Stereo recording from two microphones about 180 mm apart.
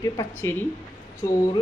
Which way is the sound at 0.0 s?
20° left (ahead or behind).